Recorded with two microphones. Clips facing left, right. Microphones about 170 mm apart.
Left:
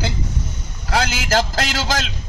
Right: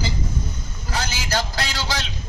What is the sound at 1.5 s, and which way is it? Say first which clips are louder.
Speech: left 5 dB; 45° left (ahead or behind).